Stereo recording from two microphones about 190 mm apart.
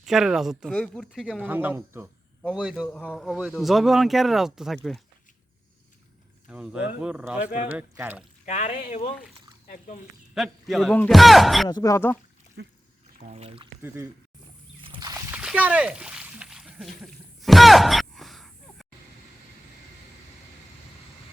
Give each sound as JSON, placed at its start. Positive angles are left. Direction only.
{"t": 0.0, "sound": "speech", "side_deg": 0}
{"t": 6.5, "sound": "speech", "side_deg": -5}
{"t": 8.4, "sound": "speech", "side_deg": 40}
{"t": 10.3, "sound": "speech", "side_deg": 0}
{"t": 11.7, "sound": "speech", "side_deg": 20}
{"t": 12.6, "sound": "speech", "side_deg": -60}
{"t": 13.1, "sound": "speech", "side_deg": -35}
{"t": 13.8, "sound": "speech", "side_deg": -10}
{"t": 14.8, "sound": "a sound", "side_deg": -20}
{"t": 15.4, "sound": "a sound", "side_deg": -5}